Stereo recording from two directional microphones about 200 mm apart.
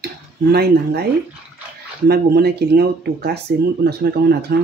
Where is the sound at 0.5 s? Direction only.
50° right (ahead or behind).